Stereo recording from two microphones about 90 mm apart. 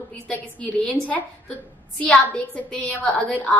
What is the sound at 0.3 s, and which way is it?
A woman's voice, 15° left (ahead or behind).